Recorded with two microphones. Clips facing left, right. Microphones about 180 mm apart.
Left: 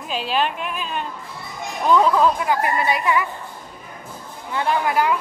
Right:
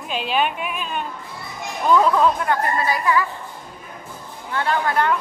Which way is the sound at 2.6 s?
20° left (ahead or behind).